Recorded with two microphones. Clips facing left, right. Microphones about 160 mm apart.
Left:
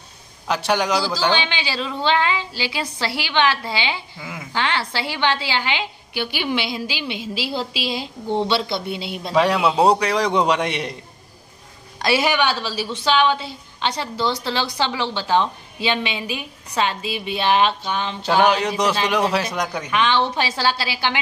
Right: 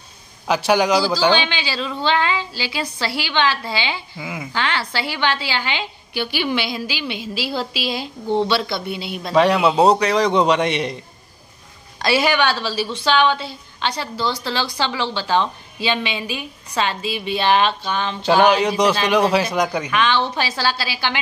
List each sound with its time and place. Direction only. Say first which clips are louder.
0.5 s a man's voice: right 4 dB; 5° right (ahead or behind)
1.3 s a woman's voice: right 2 dB; 20° left (ahead or behind)
4.2 s speech: right 4 dB; 5° right (ahead or behind)
4.5 s a woman's voice: left 1 dB; 20° left (ahead or behind)
9.3 s a man's voice: right 3 dB; 5° left (ahead or behind)
12.0 s a woman's voice: right 1 dB; 15° left (ahead or behind)
18.2 s a man's voice: right 3 dB; 5° right (ahead or behind)
19.9 s a woman's voice: even; 20° left (ahead or behind)